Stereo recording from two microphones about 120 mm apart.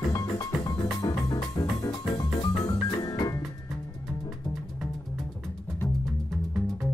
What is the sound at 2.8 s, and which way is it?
Music, 35° left (ahead or behind).